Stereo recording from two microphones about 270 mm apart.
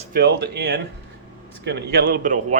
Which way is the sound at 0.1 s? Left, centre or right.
Right.